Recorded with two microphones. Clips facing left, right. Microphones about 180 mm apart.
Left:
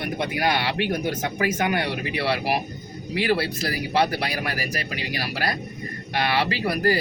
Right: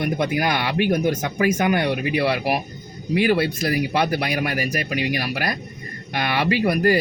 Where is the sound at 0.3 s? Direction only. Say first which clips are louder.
Right 2 dB; 25° left (ahead or behind).